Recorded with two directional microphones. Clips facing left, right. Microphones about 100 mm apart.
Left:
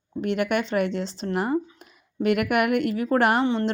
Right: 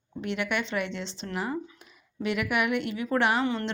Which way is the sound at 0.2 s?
45° left (ahead or behind).